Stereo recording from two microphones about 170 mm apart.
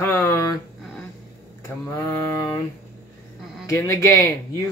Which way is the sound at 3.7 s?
15° left (ahead or behind).